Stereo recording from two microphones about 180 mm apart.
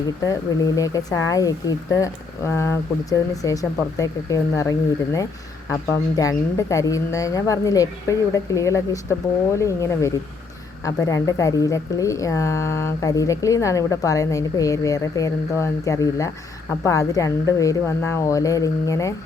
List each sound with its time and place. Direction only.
0.8 s speech: 20° left (ahead or behind)